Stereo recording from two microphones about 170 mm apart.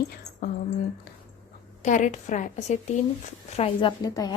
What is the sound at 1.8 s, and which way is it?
A woman's voice, 45° left (ahead or behind).